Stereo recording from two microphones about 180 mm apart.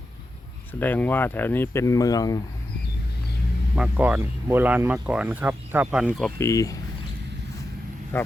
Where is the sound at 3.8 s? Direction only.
10° right (ahead or behind).